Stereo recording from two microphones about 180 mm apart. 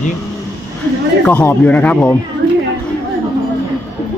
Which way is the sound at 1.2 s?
10° left (ahead or behind).